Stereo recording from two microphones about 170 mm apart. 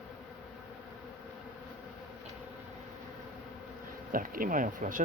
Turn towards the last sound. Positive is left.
turn(degrees=-50)  # may be behind; listen again after turning